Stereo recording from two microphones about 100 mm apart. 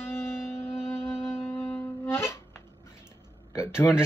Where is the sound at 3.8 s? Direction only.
25° left (ahead or behind).